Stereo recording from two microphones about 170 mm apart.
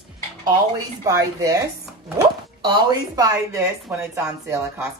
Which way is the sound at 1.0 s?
20° right (ahead or behind).